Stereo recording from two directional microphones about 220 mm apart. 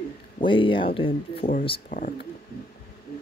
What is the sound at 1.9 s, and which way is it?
Speech, 35° left (ahead or behind).